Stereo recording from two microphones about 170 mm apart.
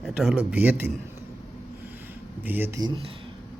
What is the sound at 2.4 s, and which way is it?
Speech, 10° right (ahead or behind).